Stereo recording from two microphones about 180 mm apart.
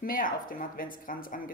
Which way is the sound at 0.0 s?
50° left (ahead or behind).